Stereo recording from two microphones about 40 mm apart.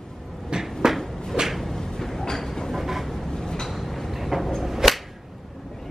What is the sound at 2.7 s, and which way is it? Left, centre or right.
Vehicle, centre.